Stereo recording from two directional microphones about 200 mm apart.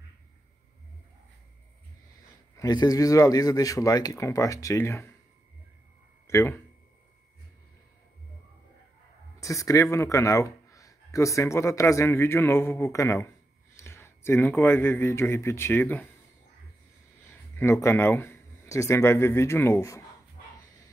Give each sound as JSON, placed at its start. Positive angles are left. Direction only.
{"t": 2.5, "sound": "speech", "side_deg": 20}
{"t": 6.2, "sound": "speech", "side_deg": 15}
{"t": 9.4, "sound": "speech", "side_deg": 15}
{"t": 17.6, "sound": "speech", "side_deg": 15}